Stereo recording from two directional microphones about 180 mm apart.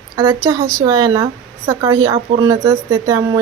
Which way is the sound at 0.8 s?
25° right (ahead or behind).